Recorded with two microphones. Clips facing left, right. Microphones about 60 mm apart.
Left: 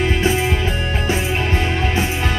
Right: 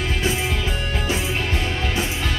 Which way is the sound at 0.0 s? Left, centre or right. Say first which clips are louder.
Left 6 dB; left.